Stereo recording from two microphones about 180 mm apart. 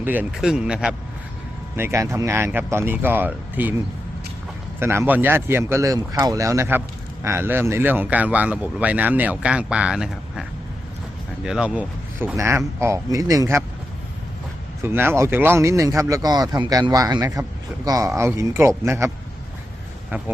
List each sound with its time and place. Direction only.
0.0 s speech: 10° right (ahead or behind)
4.8 s speech: 15° right (ahead or behind)
11.4 s speech: 5° right (ahead or behind)
14.8 s speech: 10° right (ahead or behind)